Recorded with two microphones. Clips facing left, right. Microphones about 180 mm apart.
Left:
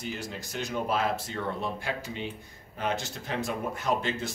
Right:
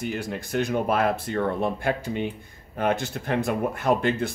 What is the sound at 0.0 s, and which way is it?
Speech, 55° right (ahead or behind).